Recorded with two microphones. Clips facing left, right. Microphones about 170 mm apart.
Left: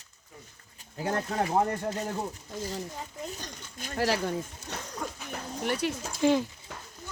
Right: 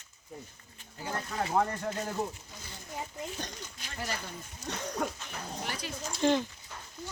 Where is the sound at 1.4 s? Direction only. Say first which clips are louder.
Left 1 dB; 25° left (ahead or behind).